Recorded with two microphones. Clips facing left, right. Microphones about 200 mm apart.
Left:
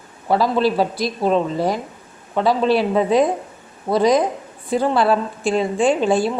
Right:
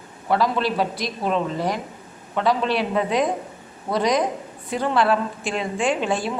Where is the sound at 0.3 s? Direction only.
35° left (ahead or behind).